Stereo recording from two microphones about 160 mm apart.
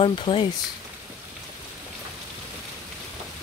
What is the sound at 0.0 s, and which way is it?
Speech, 30° left (ahead or behind).